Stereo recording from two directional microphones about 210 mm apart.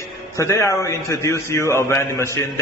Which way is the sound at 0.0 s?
15° left (ahead or behind).